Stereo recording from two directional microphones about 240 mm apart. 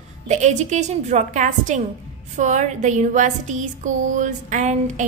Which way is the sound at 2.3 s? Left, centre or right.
Right.